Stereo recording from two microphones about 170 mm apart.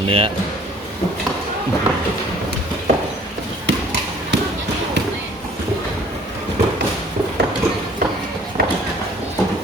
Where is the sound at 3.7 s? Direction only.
90° right.